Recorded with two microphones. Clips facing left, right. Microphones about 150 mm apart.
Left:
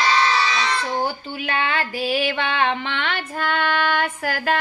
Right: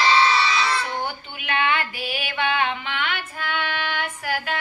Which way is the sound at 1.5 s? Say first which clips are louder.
Right 1 dB; 35° left (ahead or behind).